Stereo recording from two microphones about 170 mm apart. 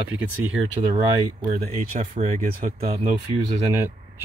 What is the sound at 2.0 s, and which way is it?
Speech, 40° right (ahead or behind).